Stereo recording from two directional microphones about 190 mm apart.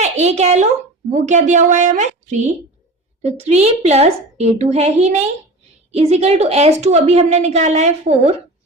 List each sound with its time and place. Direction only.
0.0 s a woman's voice: 35° right (ahead or behind)